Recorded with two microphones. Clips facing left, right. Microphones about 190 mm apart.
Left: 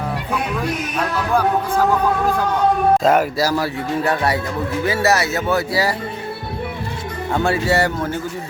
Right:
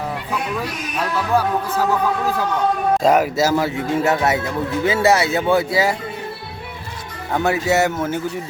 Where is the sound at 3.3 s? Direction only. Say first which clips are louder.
Right 2 dB; 20° right (ahead or behind).